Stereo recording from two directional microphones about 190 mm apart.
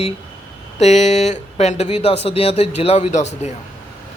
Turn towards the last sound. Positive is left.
turn(degrees=35)  # may be behind; listen again after turning